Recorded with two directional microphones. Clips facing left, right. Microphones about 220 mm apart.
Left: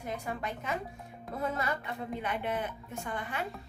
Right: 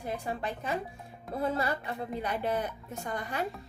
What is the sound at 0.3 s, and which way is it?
A woman's voice, 30° right (ahead or behind).